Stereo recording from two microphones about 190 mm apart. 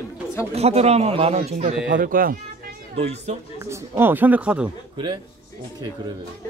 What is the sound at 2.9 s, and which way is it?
Speech, 35° right (ahead or behind).